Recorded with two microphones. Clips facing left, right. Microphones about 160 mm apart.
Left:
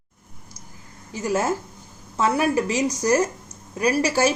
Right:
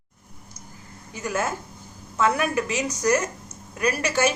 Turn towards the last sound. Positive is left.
turn(degrees=30)  # may be behind; listen again after turning